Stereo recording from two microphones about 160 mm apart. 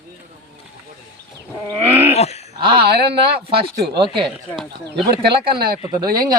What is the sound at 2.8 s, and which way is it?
Speech, 85° right.